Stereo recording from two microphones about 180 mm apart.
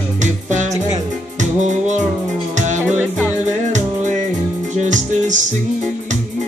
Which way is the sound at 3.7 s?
40° right (ahead or behind).